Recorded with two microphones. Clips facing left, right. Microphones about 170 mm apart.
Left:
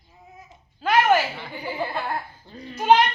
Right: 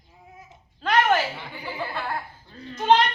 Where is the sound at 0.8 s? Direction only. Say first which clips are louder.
Left 2 dB; 5° left (ahead or behind).